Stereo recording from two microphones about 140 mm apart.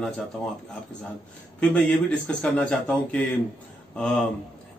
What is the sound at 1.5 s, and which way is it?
A man's voice, 5° left (ahead or behind).